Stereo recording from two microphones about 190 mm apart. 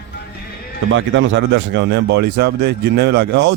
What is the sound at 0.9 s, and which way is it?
Speech, 80° right.